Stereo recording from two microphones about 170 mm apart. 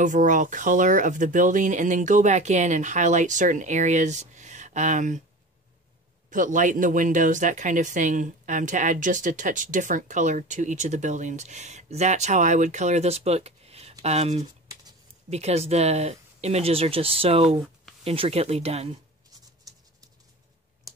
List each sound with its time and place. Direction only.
0.0 s speech: 50° right (ahead or behind)
6.3 s speech: 50° right (ahead or behind)